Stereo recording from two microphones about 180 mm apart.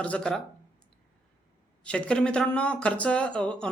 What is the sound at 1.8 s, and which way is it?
Speech, 5° left (ahead or behind).